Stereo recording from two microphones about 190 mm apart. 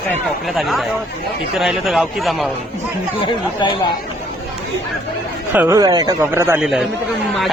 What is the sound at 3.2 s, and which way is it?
Speech, 25° left (ahead or behind).